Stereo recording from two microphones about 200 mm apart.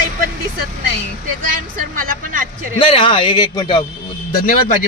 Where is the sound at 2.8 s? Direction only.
25° left (ahead or behind).